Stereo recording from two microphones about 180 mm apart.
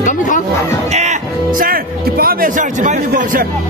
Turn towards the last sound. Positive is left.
turn(degrees=-50)  # may be behind; listen again after turning